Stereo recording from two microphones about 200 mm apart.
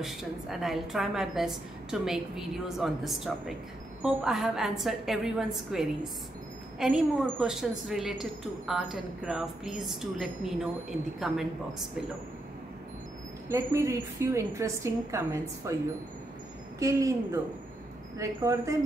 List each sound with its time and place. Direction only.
0.0 s a woman's voice: centre (ahead or behind)
13.5 s a woman's voice: 15° right (ahead or behind)
16.8 s a woman's voice: 15° right (ahead or behind)